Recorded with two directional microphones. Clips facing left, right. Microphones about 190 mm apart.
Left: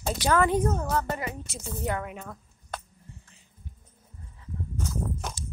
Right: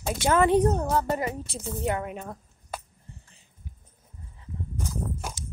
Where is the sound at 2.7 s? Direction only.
10° right (ahead or behind).